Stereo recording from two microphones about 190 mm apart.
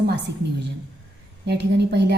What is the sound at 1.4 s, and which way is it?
Speech, 60° right (ahead or behind).